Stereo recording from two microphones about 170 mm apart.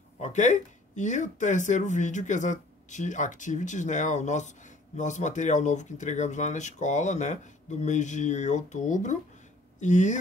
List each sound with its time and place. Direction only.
0.2 s speech: 45° left (ahead or behind)